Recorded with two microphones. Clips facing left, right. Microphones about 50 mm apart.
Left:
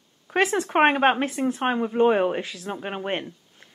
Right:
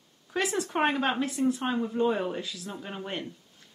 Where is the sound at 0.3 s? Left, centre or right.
Left.